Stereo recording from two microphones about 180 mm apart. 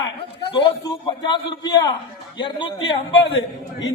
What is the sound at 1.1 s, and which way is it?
A man's voice, 25° left (ahead or behind).